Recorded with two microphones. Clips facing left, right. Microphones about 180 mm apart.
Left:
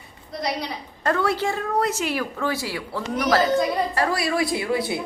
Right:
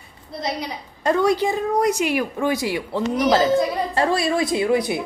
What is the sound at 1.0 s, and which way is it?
A woman's voice, 15° right (ahead or behind).